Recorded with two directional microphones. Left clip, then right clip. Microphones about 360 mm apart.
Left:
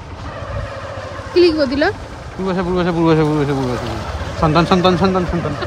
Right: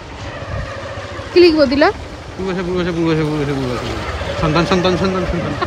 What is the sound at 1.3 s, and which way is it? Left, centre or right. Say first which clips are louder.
Speech: right 3 dB; centre.